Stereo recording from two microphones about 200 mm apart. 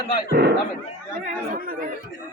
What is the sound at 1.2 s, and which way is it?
Speech, 45° right (ahead or behind).